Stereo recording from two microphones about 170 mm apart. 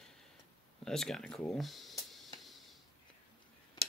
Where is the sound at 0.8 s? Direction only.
Centre (ahead or behind).